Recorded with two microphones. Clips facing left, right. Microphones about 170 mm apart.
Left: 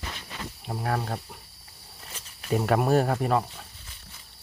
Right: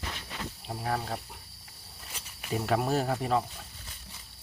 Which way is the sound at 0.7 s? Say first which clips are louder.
Left 3 dB; 60° left (ahead or behind).